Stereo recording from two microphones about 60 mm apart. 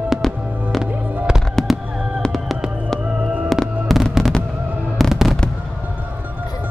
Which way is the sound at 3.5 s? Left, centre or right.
Centre.